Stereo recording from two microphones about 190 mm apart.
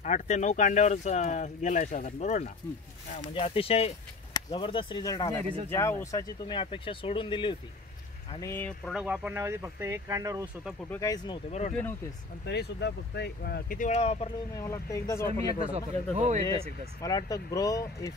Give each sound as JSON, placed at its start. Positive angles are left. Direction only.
{"t": 0.0, "sound": "speech", "side_deg": 40}
{"t": 8.4, "sound": "speech", "side_deg": 10}
{"t": 8.9, "sound": "speech", "side_deg": -5}
{"t": 10.9, "sound": "speech", "side_deg": 15}
{"t": 12.4, "sound": "speech", "side_deg": 60}
{"t": 14.6, "sound": "speech", "side_deg": 15}
{"t": 15.7, "sound": "speech", "side_deg": -35}
{"t": 17.0, "sound": "speech", "side_deg": 20}